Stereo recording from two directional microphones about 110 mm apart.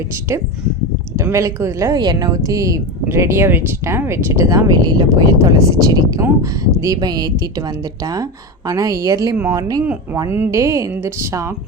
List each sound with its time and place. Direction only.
1.1 s a woman's voice: 25° right (ahead or behind)
10.2 s a woman's voice: 20° right (ahead or behind)